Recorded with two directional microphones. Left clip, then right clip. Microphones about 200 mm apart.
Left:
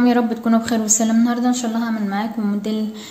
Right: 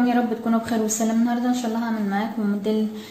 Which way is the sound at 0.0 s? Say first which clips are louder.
Left 4 dB; 45° left (ahead or behind).